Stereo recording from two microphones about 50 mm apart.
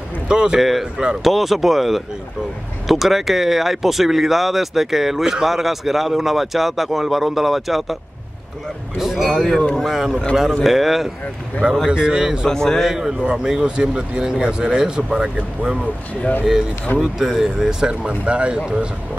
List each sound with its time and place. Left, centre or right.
0.3 s a man's voice: centre
0.6 s a man's voice: centre
9.2 s speech: centre
11.9 s a man's voice: centre
12.4 s a man's voice: centre
12.8 s a man's voice: centre
15.8 s speech: left
17.0 s a man's voice: centre
18.0 s speech: right